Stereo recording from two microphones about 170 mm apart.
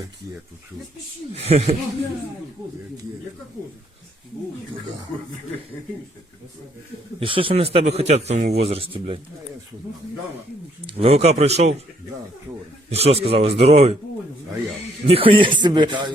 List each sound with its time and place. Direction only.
1.3 s speech: 40° right (ahead or behind)
7.2 s speech: 30° right (ahead or behind)
10.8 s speech: 35° right (ahead or behind)
12.9 s speech: 35° right (ahead or behind)
15.0 s speech: 30° right (ahead or behind)